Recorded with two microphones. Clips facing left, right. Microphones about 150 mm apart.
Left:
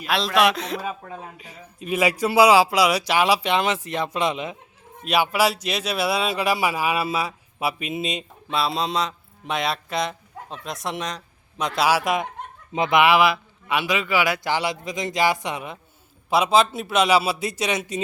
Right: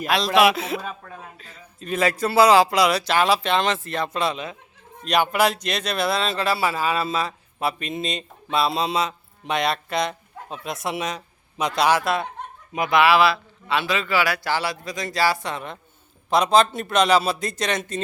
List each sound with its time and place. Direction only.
0.3 s speech: 5° right (ahead or behind)
1.0 s speech: 15° left (ahead or behind)
5.0 s speech: 5° left (ahead or behind)